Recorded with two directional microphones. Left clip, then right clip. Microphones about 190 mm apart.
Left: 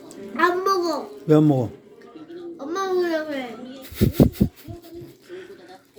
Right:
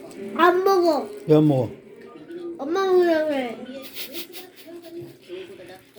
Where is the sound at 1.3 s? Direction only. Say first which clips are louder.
Even; 45° left (ahead or behind).